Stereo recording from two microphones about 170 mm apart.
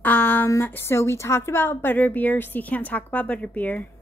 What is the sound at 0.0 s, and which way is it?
A woman's voice, 10° left (ahead or behind).